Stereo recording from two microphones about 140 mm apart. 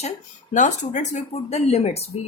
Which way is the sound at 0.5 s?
60° left (ahead or behind).